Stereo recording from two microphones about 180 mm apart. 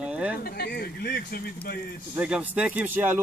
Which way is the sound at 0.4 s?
60° left (ahead or behind).